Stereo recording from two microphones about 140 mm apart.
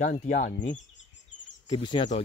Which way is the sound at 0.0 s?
70° left (ahead or behind).